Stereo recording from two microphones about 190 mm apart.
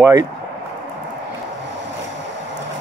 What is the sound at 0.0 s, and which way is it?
Speech, 20° right (ahead or behind).